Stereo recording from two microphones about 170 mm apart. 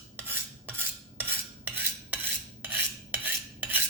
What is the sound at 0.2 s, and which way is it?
Cutlery, 10° right (ahead or behind).